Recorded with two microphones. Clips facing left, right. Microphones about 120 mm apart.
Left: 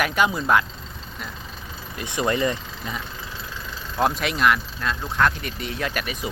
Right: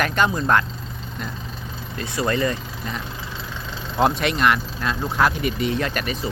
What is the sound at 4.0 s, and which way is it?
Speech, centre (ahead or behind).